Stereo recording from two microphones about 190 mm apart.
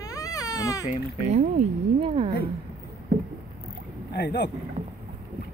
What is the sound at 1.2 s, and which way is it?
Speech, 35° right (ahead or behind).